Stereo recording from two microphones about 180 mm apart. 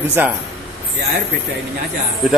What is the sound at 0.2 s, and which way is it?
Speech, 10° right (ahead or behind).